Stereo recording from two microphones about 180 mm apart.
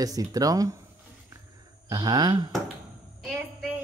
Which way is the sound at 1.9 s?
20° right (ahead or behind).